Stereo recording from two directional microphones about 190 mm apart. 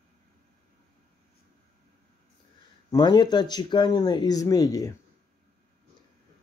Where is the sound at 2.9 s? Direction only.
25° left (ahead or behind).